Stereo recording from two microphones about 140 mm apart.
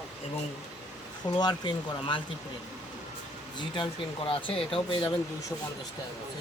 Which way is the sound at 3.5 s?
35° left (ahead or behind).